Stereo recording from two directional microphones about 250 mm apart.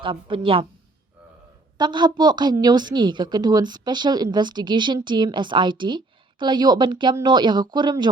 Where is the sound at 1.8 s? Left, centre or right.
Centre.